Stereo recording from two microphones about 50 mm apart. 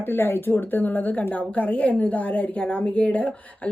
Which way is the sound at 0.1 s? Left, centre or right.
Left.